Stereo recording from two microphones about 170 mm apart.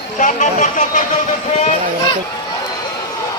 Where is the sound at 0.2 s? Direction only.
45° left (ahead or behind).